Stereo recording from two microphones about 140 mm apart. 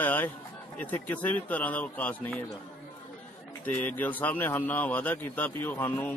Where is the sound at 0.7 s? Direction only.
10° left (ahead or behind).